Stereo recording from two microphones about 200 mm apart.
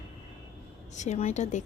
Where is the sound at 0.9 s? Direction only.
35° left (ahead or behind).